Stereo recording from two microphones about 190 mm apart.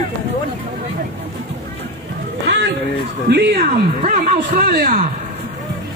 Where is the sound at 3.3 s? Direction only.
60° right (ahead or behind).